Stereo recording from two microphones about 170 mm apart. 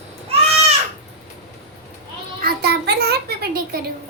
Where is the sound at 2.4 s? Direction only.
70° right (ahead or behind).